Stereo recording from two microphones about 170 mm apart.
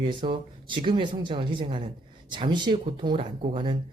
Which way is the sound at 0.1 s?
30° right (ahead or behind).